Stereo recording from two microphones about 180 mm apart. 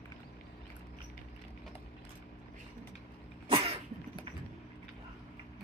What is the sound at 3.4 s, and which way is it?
Cough, 30° right (ahead or behind).